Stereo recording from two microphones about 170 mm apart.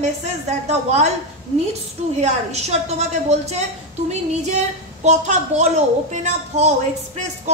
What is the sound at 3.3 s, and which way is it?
A woman's voice, 40° right (ahead or behind).